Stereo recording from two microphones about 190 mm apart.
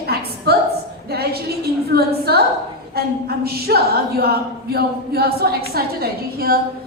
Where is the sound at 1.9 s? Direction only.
55° right (ahead or behind).